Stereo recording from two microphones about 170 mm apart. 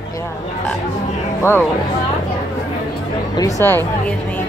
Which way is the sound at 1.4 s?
15° left (ahead or behind).